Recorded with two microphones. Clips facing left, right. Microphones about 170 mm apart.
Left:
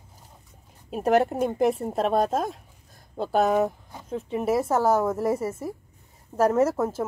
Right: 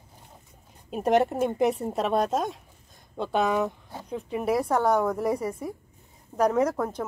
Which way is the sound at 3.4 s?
50° left (ahead or behind).